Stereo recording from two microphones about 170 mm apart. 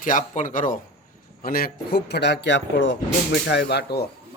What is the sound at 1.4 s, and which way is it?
Speech, 60° left (ahead or behind).